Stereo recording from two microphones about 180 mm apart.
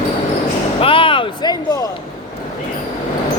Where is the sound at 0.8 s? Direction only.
30° left (ahead or behind).